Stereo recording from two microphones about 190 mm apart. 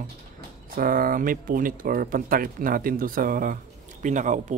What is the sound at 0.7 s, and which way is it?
Speech, 50° right (ahead or behind).